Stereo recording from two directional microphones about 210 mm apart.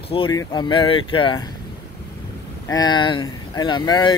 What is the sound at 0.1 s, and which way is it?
Speech, 20° left (ahead or behind).